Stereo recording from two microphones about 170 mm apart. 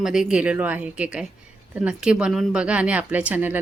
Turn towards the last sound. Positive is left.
turn(degrees=-10)  # may be behind; listen again after turning